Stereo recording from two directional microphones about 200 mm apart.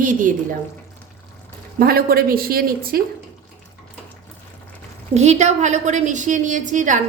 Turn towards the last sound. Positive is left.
turn(degrees=-40)  # may be behind; listen again after turning